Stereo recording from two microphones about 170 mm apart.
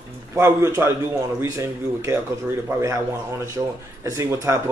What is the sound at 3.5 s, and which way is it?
Speech, 20° right (ahead or behind).